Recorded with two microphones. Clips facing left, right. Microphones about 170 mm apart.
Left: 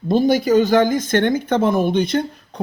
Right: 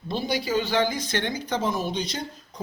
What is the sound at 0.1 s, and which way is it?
Speech, 45° left (ahead or behind).